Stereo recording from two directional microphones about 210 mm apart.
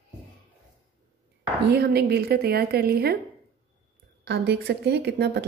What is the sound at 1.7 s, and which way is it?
A woman's voice, 50° right (ahead or behind).